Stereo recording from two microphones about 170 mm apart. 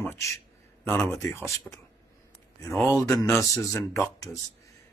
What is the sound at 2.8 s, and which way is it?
Speech, 20° left (ahead or behind).